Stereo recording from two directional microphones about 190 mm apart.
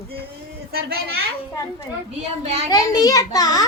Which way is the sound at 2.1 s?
35° right (ahead or behind).